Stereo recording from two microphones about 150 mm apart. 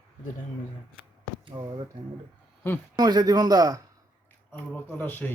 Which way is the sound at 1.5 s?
30° right (ahead or behind).